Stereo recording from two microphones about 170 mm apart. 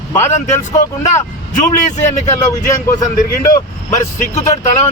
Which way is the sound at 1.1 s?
45° left (ahead or behind).